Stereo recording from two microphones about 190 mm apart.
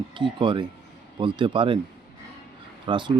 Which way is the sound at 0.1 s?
25° right (ahead or behind).